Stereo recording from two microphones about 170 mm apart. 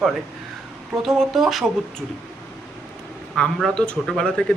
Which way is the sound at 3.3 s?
Centre (ahead or behind).